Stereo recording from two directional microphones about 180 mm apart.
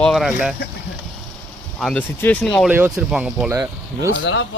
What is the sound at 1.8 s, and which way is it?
Speech, 5° left (ahead or behind).